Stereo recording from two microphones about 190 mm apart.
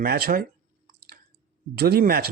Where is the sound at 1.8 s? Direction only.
55° right (ahead or behind).